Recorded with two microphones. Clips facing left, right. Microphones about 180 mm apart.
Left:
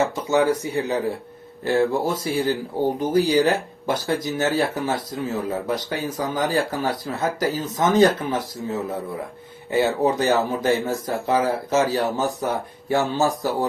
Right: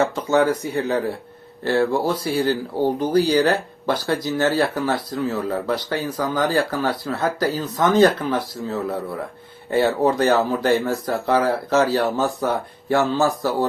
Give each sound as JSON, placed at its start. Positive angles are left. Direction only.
{"t": 0.3, "sound": "speech", "side_deg": 15}